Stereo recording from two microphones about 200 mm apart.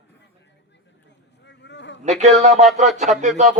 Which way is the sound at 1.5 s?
60° left (ahead or behind).